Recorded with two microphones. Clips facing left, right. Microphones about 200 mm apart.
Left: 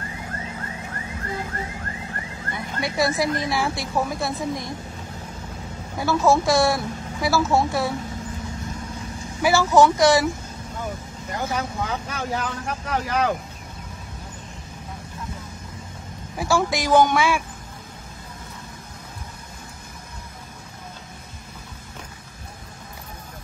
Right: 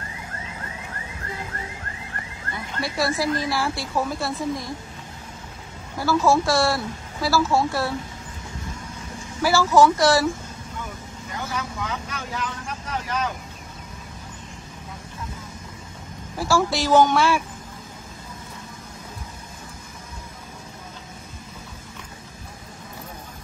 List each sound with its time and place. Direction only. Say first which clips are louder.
2.5 s speech: left 2 dB; 20° left (ahead or behind)
5.9 s speech: even; 20° left (ahead or behind)
9.4 s speech: even; 20° left (ahead or behind)
11.8 s speech: left 3 dB; 35° left (ahead or behind)
12.4 s speech: left 3 dB; 60° left (ahead or behind)
16.3 s speech: even; 20° left (ahead or behind)